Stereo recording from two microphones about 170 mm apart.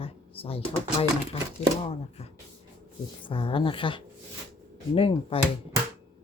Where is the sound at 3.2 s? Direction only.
30° left (ahead or behind).